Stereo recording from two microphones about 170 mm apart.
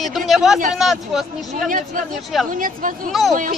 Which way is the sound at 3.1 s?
Centre (ahead or behind).